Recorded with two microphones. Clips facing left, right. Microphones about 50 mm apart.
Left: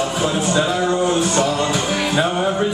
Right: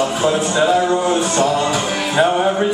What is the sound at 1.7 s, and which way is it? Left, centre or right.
Music, centre.